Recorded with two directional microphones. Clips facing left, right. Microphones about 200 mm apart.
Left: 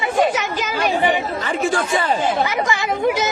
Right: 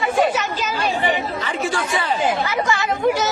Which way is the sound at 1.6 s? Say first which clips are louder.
Left 4 dB; 50° left (ahead or behind).